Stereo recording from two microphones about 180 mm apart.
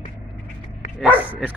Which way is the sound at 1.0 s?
10° right (ahead or behind).